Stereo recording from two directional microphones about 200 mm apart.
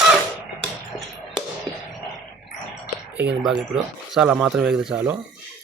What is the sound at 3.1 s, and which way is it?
Speech, 5° right (ahead or behind).